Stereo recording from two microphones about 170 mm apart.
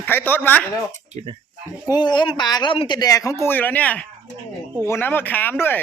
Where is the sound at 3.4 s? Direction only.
10° left (ahead or behind).